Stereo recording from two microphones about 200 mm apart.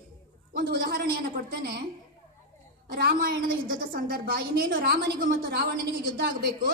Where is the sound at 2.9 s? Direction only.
50° right (ahead or behind).